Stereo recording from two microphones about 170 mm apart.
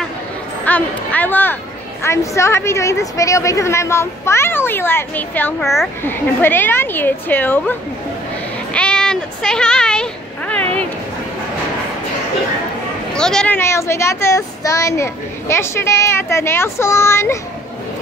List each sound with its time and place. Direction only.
0.7 s speech: 10° left (ahead or behind)
5.6 s a child's voice: centre (ahead or behind)
6.0 s speech: 10° left (ahead or behind)
8.7 s a sound: 5° left (ahead or behind)
13.1 s speech: 5° left (ahead or behind)